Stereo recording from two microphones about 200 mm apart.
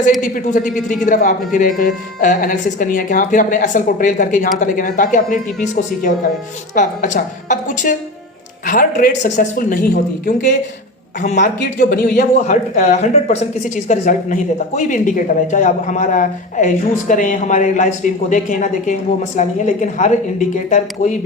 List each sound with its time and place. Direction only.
0.2 s a woman's voice: 40° left (ahead or behind)
6.7 s a woman's voice: 40° left (ahead or behind)
11.6 s a woman's voice: 50° left (ahead or behind)
12.5 s a woman's voice: 35° left (ahead or behind)